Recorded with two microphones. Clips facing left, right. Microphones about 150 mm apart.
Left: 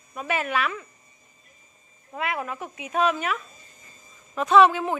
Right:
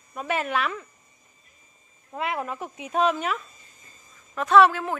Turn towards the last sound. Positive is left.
turn(degrees=20)  # may be behind; listen again after turning